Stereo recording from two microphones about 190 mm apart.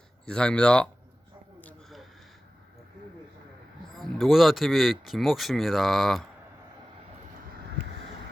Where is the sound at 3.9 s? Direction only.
Centre (ahead or behind).